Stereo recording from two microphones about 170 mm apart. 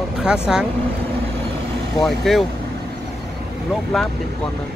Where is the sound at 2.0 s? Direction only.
Centre (ahead or behind).